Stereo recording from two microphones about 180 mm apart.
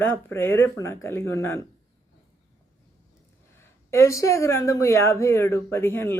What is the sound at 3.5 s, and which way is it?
Speech, 15° left (ahead or behind).